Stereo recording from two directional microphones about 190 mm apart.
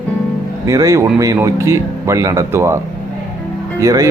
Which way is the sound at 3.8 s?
15° right (ahead or behind).